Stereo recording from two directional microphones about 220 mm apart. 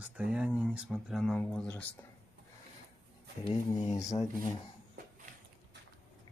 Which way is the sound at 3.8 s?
30° left (ahead or behind).